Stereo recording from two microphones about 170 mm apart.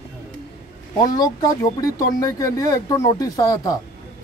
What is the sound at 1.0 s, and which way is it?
Speech, 20° left (ahead or behind).